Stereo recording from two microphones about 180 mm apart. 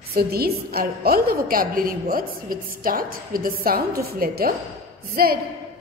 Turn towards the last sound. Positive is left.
turn(degrees=-55)  # may be behind; listen again after turning